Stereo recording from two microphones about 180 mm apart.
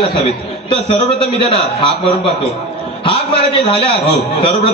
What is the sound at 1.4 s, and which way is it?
Speech, 30° left (ahead or behind).